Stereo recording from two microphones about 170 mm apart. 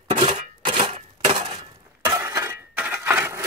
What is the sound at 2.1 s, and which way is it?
Breaking, 15° right (ahead or behind).